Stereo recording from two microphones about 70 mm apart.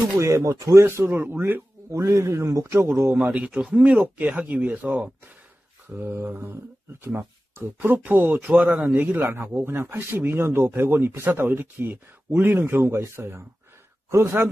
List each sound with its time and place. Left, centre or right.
0.2 s a man's voice: right
0.8 s a man's voice: right
2.0 s a man's voice: right
3.3 s speech: centre
5.9 s a man's voice: right